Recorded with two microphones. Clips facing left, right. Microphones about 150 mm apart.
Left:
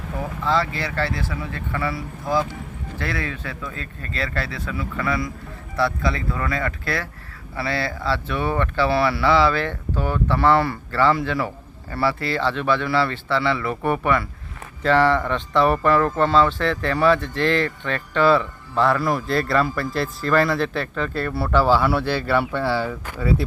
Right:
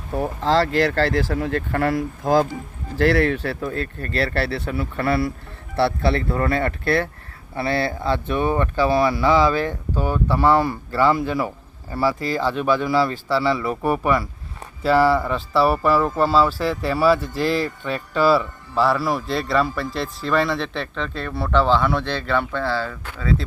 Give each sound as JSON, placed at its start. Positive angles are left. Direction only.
{"t": 0.2, "sound": "speech", "side_deg": -90}
{"t": 1.7, "sound": "speech", "side_deg": -45}
{"t": 3.1, "sound": "speech", "side_deg": -75}
{"t": 3.5, "sound": "speech", "side_deg": -45}
{"t": 3.8, "sound": "speech", "side_deg": -60}
{"t": 4.9, "sound": "speech", "side_deg": -35}